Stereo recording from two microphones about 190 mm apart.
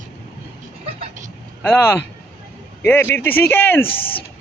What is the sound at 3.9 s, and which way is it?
Speech, 30° left (ahead or behind).